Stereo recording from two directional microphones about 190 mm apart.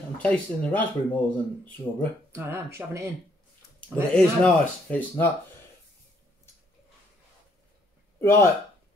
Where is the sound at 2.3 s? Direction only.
10° right (ahead or behind).